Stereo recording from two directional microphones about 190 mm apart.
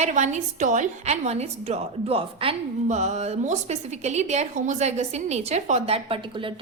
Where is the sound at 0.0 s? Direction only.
40° right (ahead or behind).